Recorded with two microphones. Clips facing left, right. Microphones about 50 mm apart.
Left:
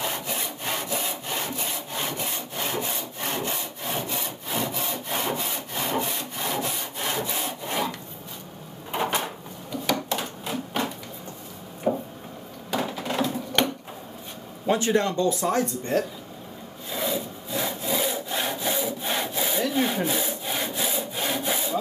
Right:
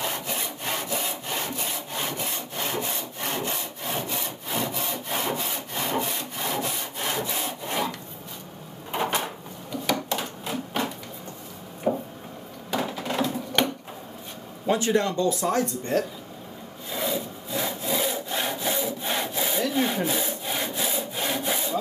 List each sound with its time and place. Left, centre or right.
0.0 s sawing: centre
8.9 s a sound: centre
10.0 s typewriter: centre
11.9 s a sound: centre
14.7 s speech: left
16.9 s sawing: centre